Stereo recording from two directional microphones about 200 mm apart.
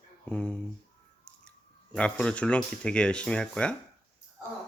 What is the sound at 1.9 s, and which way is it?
Speech, 5° left (ahead or behind).